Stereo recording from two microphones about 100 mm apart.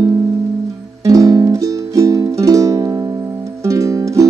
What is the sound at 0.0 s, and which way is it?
Music, 35° right (ahead or behind).